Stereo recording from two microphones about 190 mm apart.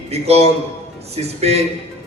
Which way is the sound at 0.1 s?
35° right (ahead or behind).